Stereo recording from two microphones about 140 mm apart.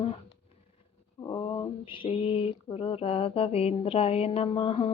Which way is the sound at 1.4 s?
25° left (ahead or behind).